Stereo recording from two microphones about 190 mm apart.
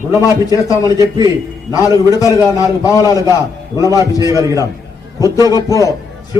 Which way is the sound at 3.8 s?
15° right (ahead or behind).